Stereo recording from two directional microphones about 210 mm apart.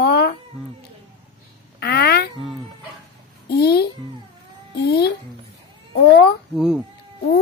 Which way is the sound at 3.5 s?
50° left (ahead or behind).